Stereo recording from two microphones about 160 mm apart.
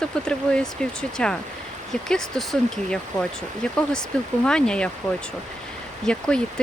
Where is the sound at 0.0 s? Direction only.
5° left (ahead or behind).